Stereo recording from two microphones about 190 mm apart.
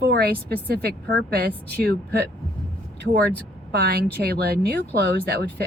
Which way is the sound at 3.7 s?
55° right (ahead or behind).